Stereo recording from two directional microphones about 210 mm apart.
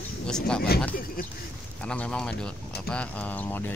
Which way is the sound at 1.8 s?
5° left (ahead or behind).